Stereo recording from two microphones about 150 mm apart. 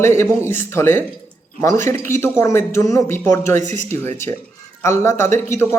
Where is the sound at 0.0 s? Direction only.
20° left (ahead or behind).